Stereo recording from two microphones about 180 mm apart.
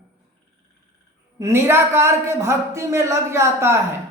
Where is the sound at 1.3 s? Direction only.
15° right (ahead or behind).